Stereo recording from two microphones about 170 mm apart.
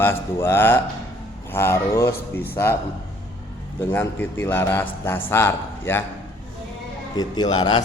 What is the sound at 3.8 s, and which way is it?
A man's voice, 15° left (ahead or behind).